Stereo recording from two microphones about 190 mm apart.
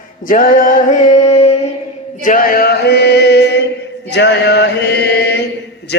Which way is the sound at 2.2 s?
45° left (ahead or behind).